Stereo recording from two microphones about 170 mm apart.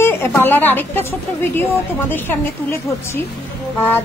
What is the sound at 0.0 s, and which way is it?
A woman's voice, 15° left (ahead or behind).